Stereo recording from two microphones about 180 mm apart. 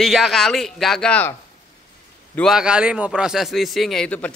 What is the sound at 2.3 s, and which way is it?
Speech, centre (ahead or behind).